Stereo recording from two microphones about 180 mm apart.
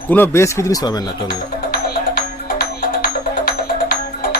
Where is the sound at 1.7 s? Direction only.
55° left (ahead or behind).